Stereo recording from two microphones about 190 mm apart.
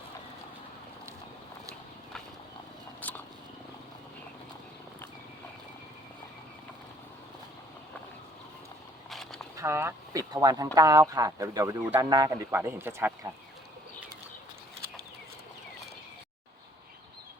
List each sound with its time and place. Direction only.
9.0 s walk: centre (ahead or behind)
9.6 s speech: 15° right (ahead or behind)